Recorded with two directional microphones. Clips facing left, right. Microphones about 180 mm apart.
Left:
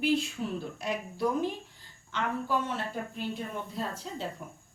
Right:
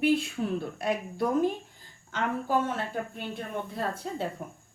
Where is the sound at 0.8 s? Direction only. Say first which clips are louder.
Right 1 dB; 50° right (ahead or behind).